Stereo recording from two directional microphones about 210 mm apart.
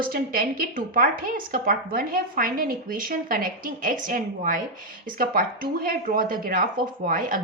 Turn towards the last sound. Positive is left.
turn(degrees=-40)  # may be behind; listen again after turning